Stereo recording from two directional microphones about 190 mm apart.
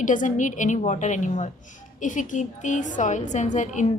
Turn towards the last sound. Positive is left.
turn(degrees=40)  # may be behind; listen again after turning